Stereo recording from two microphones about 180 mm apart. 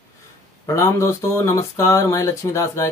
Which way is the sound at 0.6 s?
15° left (ahead or behind).